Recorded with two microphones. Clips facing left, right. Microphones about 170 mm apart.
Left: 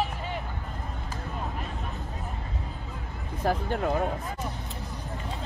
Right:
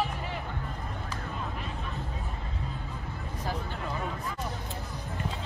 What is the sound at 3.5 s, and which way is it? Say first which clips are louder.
Speech: left 9 dB; 55° left (ahead or behind).